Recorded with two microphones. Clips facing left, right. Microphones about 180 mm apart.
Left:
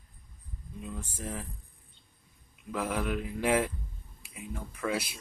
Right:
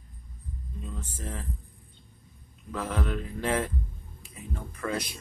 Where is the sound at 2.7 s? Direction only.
10° left (ahead or behind).